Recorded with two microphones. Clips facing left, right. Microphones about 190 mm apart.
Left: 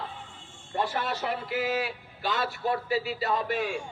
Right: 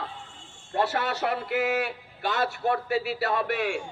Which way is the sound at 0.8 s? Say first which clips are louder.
Right 3 dB; 70° right (ahead or behind).